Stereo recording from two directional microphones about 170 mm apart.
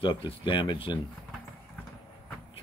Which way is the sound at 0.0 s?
30° left (ahead or behind).